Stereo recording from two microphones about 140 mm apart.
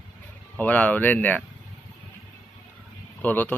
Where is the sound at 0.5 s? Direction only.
10° left (ahead or behind).